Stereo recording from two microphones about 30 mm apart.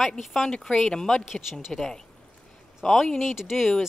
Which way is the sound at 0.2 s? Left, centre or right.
Centre.